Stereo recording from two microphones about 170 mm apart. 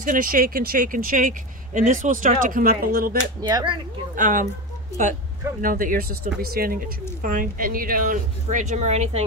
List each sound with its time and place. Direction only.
0.0 s speech: 55° right (ahead or behind)
3.4 s speech: 25° right (ahead or behind)
4.2 s speech: 50° right (ahead or behind)
5.6 s speech: 55° right (ahead or behind)